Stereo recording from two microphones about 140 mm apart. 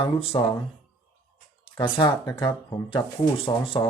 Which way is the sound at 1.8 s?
35° left (ahead or behind).